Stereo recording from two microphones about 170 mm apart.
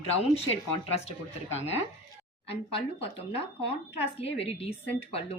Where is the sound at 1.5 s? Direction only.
40° left (ahead or behind).